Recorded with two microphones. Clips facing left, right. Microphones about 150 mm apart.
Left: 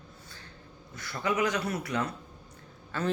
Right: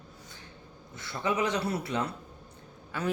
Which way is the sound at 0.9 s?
25° right (ahead or behind).